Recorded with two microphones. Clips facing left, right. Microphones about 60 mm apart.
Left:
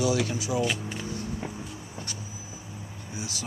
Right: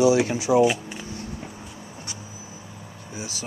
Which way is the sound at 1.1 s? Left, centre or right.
Left.